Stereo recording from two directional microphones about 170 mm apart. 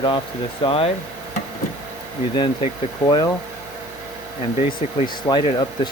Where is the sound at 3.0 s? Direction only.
25° left (ahead or behind).